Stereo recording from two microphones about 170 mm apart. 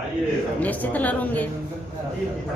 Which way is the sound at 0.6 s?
10° left (ahead or behind).